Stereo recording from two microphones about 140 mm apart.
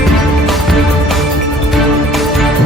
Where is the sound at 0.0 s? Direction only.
Centre (ahead or behind).